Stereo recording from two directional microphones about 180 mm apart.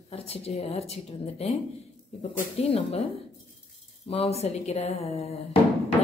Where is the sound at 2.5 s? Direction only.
35° left (ahead or behind).